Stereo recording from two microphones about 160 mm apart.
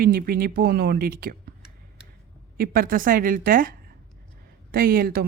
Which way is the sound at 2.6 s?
60° right (ahead or behind).